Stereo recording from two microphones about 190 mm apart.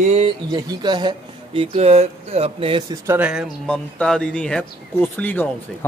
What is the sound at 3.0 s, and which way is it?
Speech, 10° right (ahead or behind).